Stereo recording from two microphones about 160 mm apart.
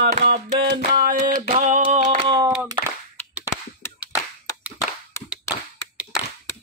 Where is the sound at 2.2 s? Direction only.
30° right (ahead or behind).